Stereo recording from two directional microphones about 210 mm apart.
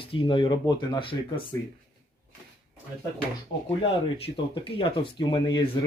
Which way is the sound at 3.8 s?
25° left (ahead or behind).